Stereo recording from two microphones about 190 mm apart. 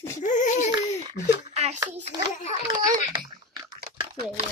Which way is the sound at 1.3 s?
35° right (ahead or behind).